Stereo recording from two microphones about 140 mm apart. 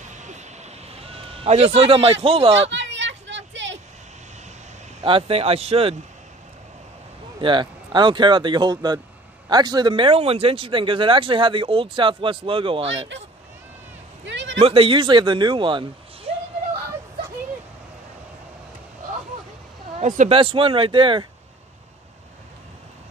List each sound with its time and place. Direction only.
0.1 s a sound: 60° right (ahead or behind); by 2.7 s 40° right (ahead or behind)
5.0 s speech: 40° right (ahead or behind)
7.3 s speech: 35° right (ahead or behind)
14.6 s speech: 40° right (ahead or behind)
20.0 s speech: 60° right (ahead or behind)
20.3 s speech: 40° right (ahead or behind)